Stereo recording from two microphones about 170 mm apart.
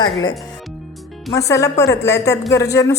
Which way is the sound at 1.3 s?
20° left (ahead or behind).